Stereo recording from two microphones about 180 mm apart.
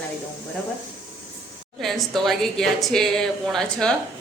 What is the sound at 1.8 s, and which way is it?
Speech, centre (ahead or behind).